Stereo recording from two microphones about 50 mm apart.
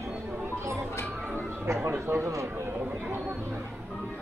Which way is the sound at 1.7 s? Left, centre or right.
Right.